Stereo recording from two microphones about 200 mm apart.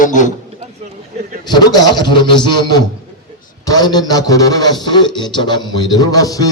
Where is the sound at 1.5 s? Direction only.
20° left (ahead or behind).